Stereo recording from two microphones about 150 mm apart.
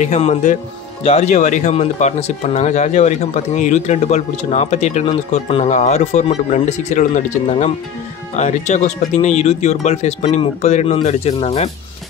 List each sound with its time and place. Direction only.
0.0 s speech: 50° left (ahead or behind)